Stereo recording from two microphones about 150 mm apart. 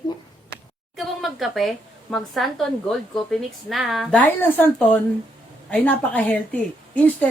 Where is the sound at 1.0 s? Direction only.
Centre (ahead or behind).